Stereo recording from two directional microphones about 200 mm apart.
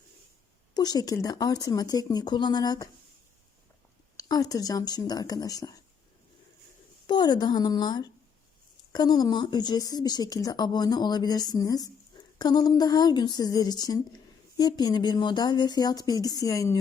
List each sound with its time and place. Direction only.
0.7 s speech: 20° left (ahead or behind)
4.2 s speech: 20° left (ahead or behind)
7.1 s speech: 20° left (ahead or behind)